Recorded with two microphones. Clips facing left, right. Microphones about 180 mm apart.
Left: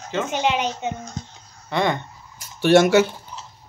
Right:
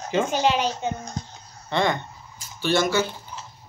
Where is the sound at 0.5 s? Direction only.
20° left (ahead or behind).